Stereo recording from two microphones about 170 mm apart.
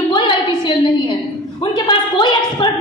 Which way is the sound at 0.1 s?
25° left (ahead or behind).